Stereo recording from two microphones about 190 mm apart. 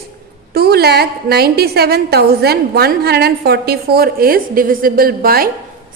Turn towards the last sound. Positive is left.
turn(degrees=-50)  # may be behind; listen again after turning